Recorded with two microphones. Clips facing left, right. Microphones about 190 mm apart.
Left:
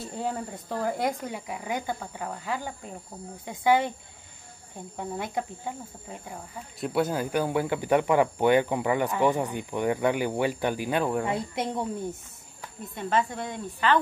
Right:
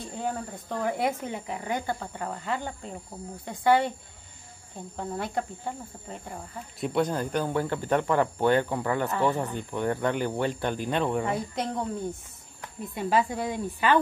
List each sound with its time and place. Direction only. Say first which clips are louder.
0.0 s speech: left 1 dB; 5° left (ahead or behind)
3.6 s speech: even; 20° left (ahead or behind)
4.9 s speech: right 1 dB; 10° left (ahead or behind)
11.2 s speech: even; 25° left (ahead or behind)
12.9 s speech: right 2 dB; 5° right (ahead or behind)